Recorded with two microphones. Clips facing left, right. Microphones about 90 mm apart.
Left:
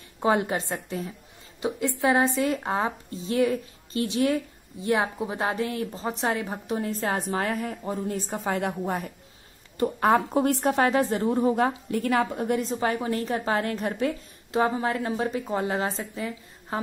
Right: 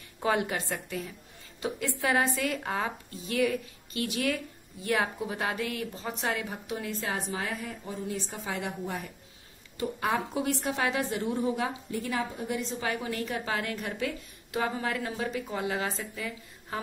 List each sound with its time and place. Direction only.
0.2 s a woman's voice: 25° left (ahead or behind)